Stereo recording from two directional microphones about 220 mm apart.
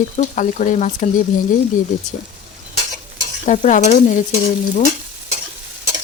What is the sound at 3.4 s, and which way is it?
Speech, 35° left (ahead or behind).